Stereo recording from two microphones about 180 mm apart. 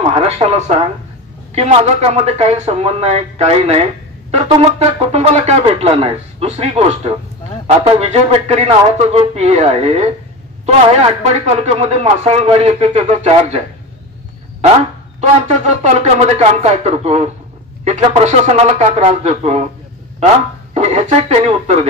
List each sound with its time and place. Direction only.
0.0 s a man's voice: 35° right (ahead or behind)
15.1 s a man's voice: 40° right (ahead or behind)
20.7 s speech: 35° right (ahead or behind)